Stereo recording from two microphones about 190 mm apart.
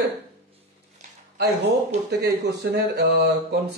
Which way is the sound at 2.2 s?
65° right (ahead or behind).